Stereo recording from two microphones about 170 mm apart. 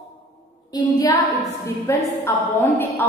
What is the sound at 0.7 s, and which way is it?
A woman's voice, 20° left (ahead or behind).